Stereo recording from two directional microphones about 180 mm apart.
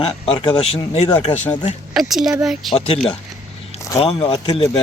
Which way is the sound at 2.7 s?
30° left (ahead or behind).